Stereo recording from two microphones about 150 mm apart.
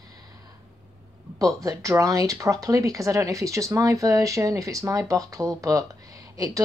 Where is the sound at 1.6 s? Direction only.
20° right (ahead or behind).